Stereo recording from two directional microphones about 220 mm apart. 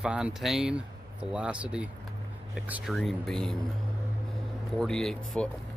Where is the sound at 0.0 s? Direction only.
5° right (ahead or behind).